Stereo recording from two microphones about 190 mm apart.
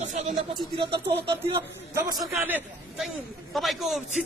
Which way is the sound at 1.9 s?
15° right (ahead or behind).